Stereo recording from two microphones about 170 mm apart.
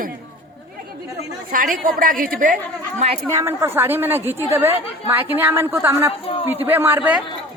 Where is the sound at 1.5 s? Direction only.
55° right (ahead or behind).